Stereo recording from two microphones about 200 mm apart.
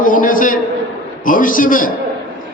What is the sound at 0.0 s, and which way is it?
A man's voice, 45° left (ahead or behind).